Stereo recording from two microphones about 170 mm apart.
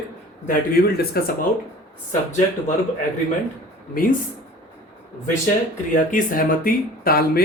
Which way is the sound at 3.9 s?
55° left (ahead or behind).